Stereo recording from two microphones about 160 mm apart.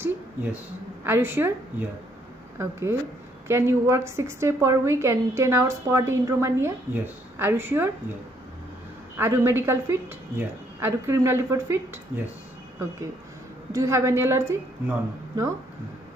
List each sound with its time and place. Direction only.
0.0 s a sound: 10° right (ahead or behind)
1.0 s a woman's voice: 15° right (ahead or behind)
9.1 s a woman's voice: 15° right (ahead or behind)
13.7 s a woman's voice: 20° right (ahead or behind)